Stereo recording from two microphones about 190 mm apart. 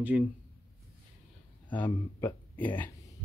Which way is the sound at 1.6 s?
10° left (ahead or behind).